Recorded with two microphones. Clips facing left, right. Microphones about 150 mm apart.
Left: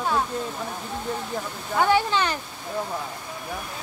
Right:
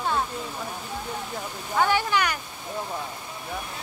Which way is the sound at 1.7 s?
20° left (ahead or behind).